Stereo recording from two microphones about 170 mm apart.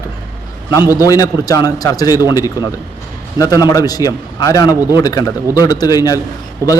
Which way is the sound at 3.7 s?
20° left (ahead or behind).